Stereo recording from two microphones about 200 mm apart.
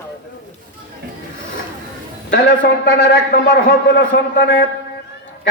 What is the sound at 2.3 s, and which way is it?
A man's voice, 60° left (ahead or behind).